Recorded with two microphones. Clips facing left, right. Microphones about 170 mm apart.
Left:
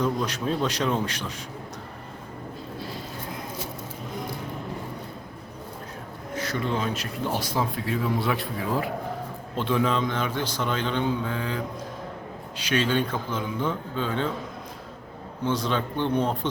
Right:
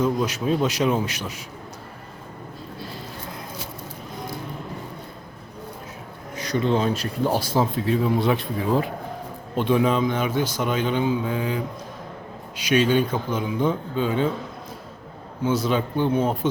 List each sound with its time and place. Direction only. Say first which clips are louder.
0.0 s speech: right 3 dB; 10° right (ahead or behind)
6.3 s a sound: right 5 dB; 15° right (ahead or behind)
6.7 s speech: right 6 dB; 35° right (ahead or behind); by 14.3 s 15° right (ahead or behind)
15.4 s speech: right 4 dB; 10° right (ahead or behind)